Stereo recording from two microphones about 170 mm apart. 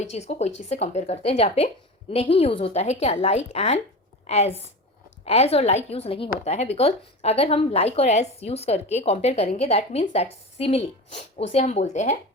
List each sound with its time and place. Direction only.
0.0 s speech: 40° left (ahead or behind)